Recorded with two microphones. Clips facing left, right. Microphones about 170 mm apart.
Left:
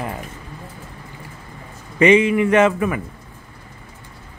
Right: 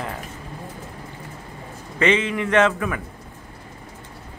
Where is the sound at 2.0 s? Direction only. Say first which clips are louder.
Left 7 dB; 10° left (ahead or behind).